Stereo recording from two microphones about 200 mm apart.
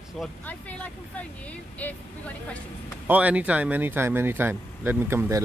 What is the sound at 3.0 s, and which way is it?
Speech, 5° right (ahead or behind).